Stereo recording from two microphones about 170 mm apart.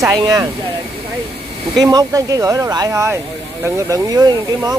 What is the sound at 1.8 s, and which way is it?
Speech, 20° right (ahead or behind).